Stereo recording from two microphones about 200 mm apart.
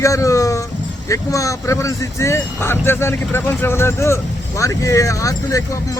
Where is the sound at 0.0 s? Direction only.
15° left (ahead or behind).